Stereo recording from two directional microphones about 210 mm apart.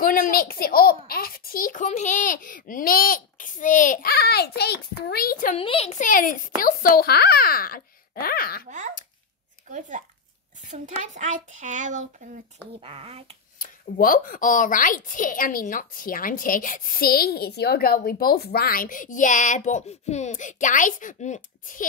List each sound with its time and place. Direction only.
0.0 s a child's voice: 40° left (ahead or behind)
5.6 s a child's voice: 25° left (ahead or behind); by 8.6 s 45° left (ahead or behind)
8.6 s a child's voice: 35° right (ahead or behind)
13.6 s a woman's voice: 40° left (ahead or behind)